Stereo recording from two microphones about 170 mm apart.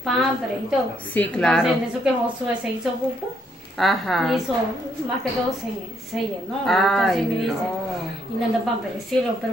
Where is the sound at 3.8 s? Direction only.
Centre (ahead or behind).